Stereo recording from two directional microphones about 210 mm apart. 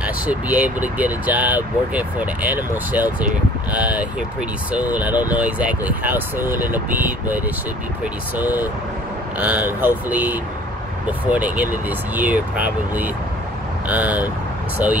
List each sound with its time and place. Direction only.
0.0 s speech: 5° right (ahead or behind)